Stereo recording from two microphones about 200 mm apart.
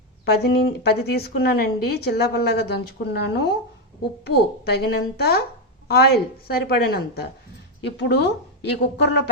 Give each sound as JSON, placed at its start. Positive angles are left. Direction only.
{"t": 0.3, "sound": "a woman's voice", "side_deg": 55}
{"t": 6.5, "sound": "a woman's voice", "side_deg": 50}